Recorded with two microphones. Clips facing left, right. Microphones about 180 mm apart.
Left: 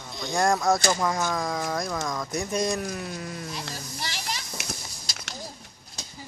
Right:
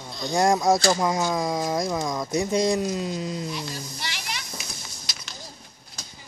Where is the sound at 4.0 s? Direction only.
35° left (ahead or behind).